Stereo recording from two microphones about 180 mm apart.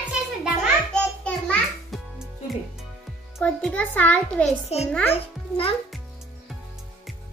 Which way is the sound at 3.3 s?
10° left (ahead or behind).